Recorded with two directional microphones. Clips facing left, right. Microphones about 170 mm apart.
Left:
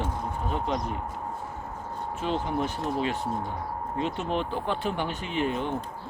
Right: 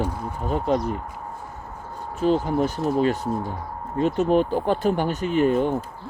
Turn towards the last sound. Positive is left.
turn(degrees=-45)  # may be behind; listen again after turning